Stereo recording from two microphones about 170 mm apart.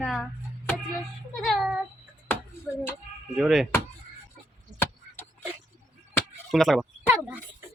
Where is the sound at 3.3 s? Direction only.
Centre (ahead or behind).